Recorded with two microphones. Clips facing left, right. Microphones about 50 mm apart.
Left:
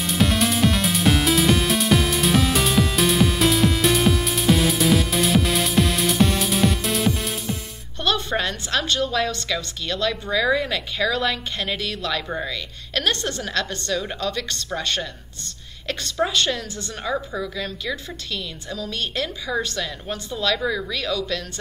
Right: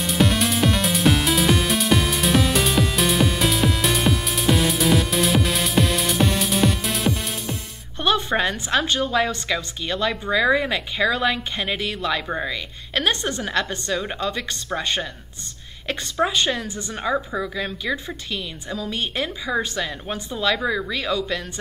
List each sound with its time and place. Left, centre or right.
0.0 s music: centre
8.0 s a woman's voice: centre